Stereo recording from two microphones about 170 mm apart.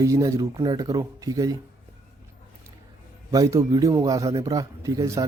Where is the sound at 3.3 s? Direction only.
20° right (ahead or behind).